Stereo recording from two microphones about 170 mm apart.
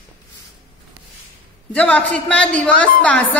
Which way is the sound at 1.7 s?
5° left (ahead or behind).